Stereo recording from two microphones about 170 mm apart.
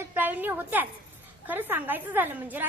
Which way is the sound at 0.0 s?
10° right (ahead or behind).